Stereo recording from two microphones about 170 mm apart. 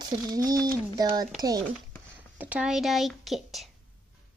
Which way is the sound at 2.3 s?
10° right (ahead or behind).